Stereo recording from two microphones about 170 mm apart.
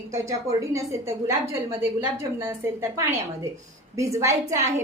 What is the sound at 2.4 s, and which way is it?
A woman's voice, 15° right (ahead or behind).